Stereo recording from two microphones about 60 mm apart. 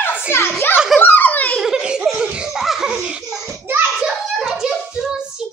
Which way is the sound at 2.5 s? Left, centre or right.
Centre.